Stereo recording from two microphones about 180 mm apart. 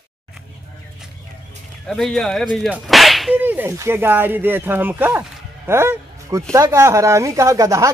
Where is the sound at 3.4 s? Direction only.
10° right (ahead or behind).